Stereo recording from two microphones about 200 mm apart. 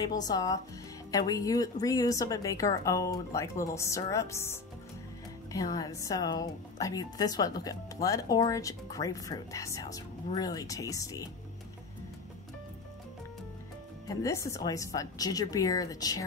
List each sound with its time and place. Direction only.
0.0 s a woman's voice: 20° left (ahead or behind)
14.0 s a woman's voice: 15° left (ahead or behind)